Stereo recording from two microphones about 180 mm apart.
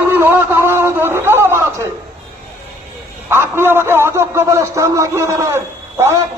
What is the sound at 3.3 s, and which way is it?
A man's voice, 15° right (ahead or behind).